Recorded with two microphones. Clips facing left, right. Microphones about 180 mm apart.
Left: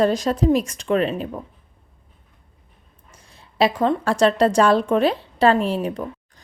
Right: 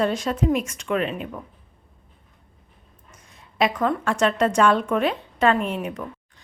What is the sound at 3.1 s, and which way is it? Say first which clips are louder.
A woman's voice: left 1 dB; 30° left (ahead or behind).